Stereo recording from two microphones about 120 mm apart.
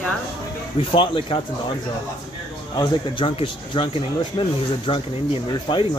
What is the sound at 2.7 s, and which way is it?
Speech, 40° left (ahead or behind).